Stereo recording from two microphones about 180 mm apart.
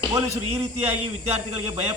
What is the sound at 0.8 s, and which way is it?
A man's voice, 35° right (ahead or behind).